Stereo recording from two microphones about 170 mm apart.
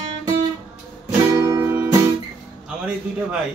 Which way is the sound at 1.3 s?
15° right (ahead or behind).